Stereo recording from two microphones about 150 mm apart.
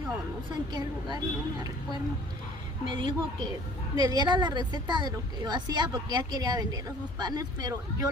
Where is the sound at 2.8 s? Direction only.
30° right (ahead or behind).